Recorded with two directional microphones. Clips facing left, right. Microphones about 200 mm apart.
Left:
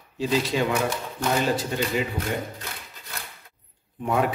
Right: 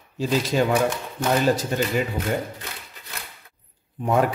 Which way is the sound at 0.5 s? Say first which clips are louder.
Right 6 dB; 45° right (ahead or behind).